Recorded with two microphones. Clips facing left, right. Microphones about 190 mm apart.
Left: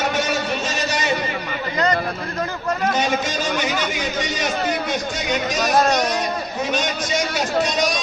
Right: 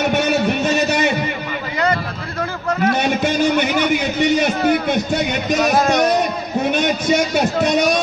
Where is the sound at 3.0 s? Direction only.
60° right (ahead or behind).